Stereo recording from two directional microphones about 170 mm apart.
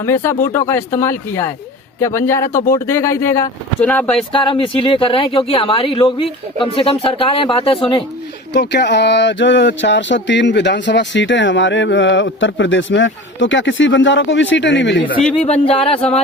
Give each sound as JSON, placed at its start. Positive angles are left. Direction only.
{"t": 0.0, "sound": "speech", "side_deg": 15}
{"t": 4.3, "sound": "speech", "side_deg": 30}
{"t": 8.5, "sound": "speech", "side_deg": 85}
{"t": 15.4, "sound": "speech", "side_deg": 35}